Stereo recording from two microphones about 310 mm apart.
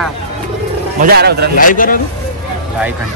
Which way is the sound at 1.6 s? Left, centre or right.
Left.